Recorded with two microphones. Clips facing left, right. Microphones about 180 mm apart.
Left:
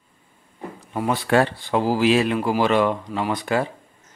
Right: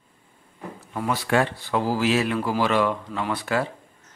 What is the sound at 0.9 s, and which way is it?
Speech, 25° left (ahead or behind).